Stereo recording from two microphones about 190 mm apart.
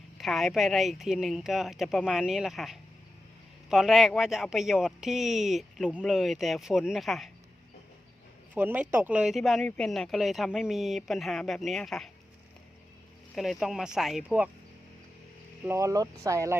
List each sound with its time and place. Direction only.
0.2 s speech: centre (ahead or behind)
8.5 s speech: 10° right (ahead or behind)
13.3 s speech: centre (ahead or behind)
15.6 s speech: 15° right (ahead or behind)